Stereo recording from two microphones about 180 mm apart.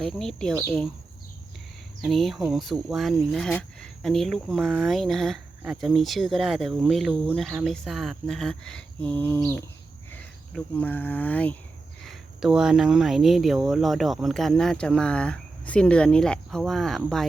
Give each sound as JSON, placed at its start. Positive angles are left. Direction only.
{"t": 0.0, "sound": "speech", "side_deg": 0}
{"t": 2.0, "sound": "speech", "side_deg": 0}
{"t": 12.0, "sound": "speech", "side_deg": -5}